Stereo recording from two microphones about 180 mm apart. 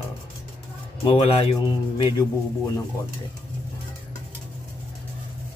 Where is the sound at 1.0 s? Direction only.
25° left (ahead or behind).